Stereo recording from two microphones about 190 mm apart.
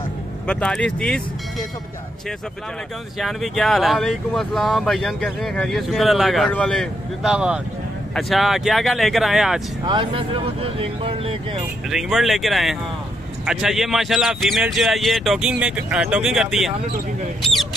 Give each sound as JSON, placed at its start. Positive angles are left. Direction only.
{"t": 0.5, "sound": "speech", "side_deg": 5}
{"t": 3.2, "sound": "speech", "side_deg": 0}
{"t": 9.8, "sound": "speech", "side_deg": -25}
{"t": 11.9, "sound": "speech", "side_deg": 0}